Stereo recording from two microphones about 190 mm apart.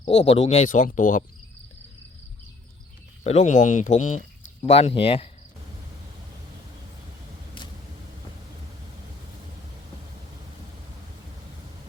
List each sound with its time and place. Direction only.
0.0 s speech: 35° left (ahead or behind)
3.2 s speech: 35° left (ahead or behind)